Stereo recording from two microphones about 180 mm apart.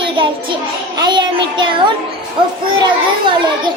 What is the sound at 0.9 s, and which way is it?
Speech, 25° right (ahead or behind).